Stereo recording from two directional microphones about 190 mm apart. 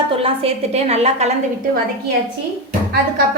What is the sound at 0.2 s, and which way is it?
A woman's voice, 30° right (ahead or behind).